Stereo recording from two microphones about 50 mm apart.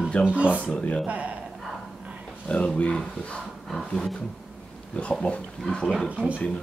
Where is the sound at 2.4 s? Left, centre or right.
Left.